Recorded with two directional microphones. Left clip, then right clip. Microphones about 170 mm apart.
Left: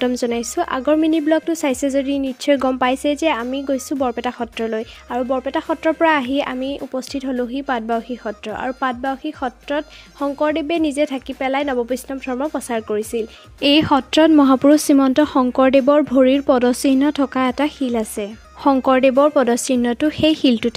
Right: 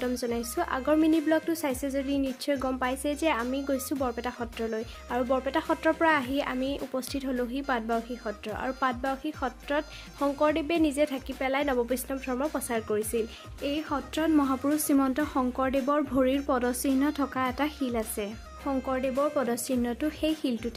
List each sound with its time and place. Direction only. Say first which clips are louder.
0.0 s a woman's voice: left 11 dB; 45° left (ahead or behind)
13.6 s a woman's voice: left 16 dB; 60° left (ahead or behind)